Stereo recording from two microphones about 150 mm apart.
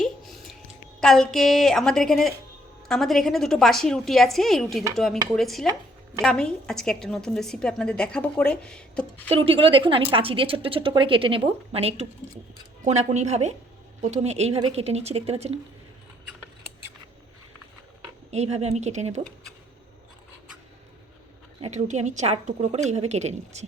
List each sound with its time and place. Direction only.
1.0 s a woman's voice: 5° left (ahead or behind)
9.3 s a woman's voice: 40° right (ahead or behind)
18.3 s a woman's voice: 45° right (ahead or behind)
21.6 s a woman's voice: 50° right (ahead or behind)